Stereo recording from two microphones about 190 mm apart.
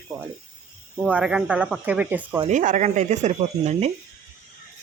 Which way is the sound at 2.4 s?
40° right (ahead or behind).